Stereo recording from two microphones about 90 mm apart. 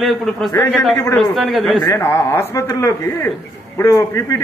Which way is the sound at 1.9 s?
30° left (ahead or behind).